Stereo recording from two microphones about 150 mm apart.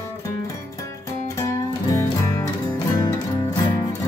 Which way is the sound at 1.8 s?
20° left (ahead or behind).